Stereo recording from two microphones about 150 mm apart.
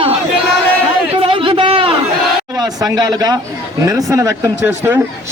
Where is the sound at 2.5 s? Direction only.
25° right (ahead or behind).